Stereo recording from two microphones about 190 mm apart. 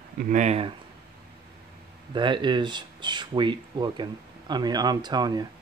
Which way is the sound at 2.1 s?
25° right (ahead or behind).